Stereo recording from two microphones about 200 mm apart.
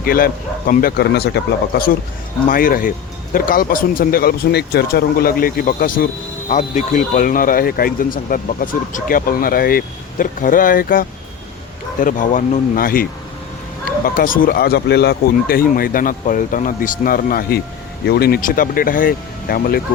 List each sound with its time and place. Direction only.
0.0 s speech: 45° left (ahead or behind)